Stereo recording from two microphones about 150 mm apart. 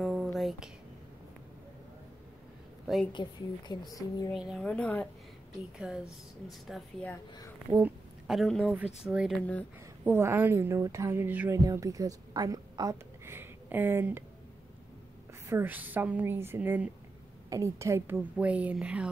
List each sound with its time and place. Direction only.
0.0 s a sound: centre (ahead or behind)
3.1 s speech: 30° left (ahead or behind)
4.3 s a woman's voice: centre (ahead or behind)
5.8 s a woman's voice: 5° right (ahead or behind)
6.7 s speech: 10° left (ahead or behind)
7.8 s a woman's voice: centre (ahead or behind)
15.4 s a woman's voice: 15° right (ahead or behind)